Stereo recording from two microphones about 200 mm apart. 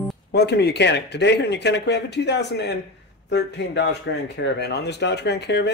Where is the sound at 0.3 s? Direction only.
55° left (ahead or behind).